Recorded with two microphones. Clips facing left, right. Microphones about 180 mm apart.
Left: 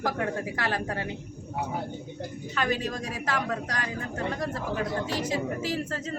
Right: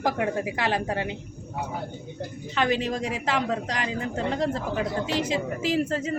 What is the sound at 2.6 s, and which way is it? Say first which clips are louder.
Speech: right 4 dB; 25° right (ahead or behind).